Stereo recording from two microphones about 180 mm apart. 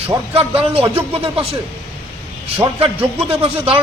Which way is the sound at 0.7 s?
30° right (ahead or behind).